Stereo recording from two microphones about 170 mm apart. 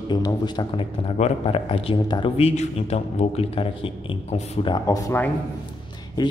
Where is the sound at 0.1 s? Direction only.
25° left (ahead or behind).